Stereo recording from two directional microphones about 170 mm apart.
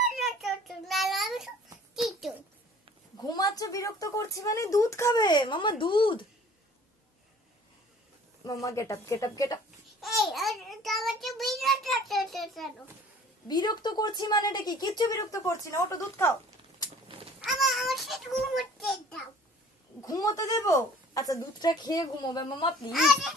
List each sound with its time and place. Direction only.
0.1 s child singing: centre (ahead or behind)
2.0 s a sound: centre (ahead or behind)
3.2 s speech: 20° left (ahead or behind)
8.6 s speech: 20° left (ahead or behind)
10.0 s child singing: centre (ahead or behind)
13.5 s speech: 25° left (ahead or behind)
17.4 s a sound: centre (ahead or behind)
20.0 s speech: 20° left (ahead or behind)
22.9 s a child's voice: centre (ahead or behind)